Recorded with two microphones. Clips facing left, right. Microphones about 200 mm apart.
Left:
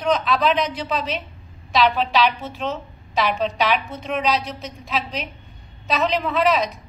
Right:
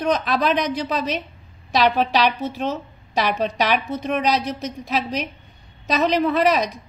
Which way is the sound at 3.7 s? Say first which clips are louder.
Right 2 dB; 45° right (ahead or behind).